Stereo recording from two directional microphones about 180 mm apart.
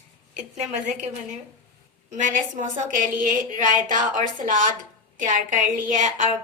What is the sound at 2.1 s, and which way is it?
A woman's voice, 45° right (ahead or behind).